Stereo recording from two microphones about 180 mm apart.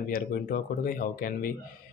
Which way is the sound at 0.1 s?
55° left (ahead or behind).